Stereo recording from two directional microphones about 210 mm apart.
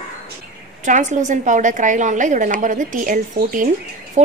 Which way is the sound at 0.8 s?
35° right (ahead or behind).